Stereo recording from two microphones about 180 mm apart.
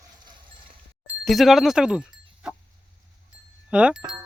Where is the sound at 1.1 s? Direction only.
Centre (ahead or behind).